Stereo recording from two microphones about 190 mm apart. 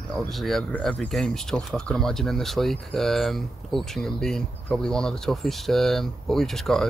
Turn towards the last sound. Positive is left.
turn(degrees=0)  # may be behind; listen again after turning